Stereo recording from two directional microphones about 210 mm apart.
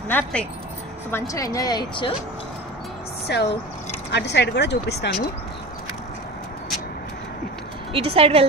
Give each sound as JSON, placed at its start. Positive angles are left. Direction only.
{"t": 0.1, "sound": "speech", "side_deg": 5}
{"t": 3.3, "sound": "speech", "side_deg": 55}
{"t": 7.9, "sound": "speech", "side_deg": -25}